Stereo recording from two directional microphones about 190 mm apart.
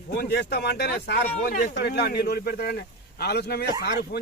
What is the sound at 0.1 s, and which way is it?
A man's voice, 55° left (ahead or behind).